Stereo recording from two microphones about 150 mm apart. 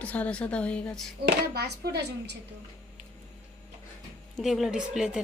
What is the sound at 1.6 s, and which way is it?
Speech, 90° right.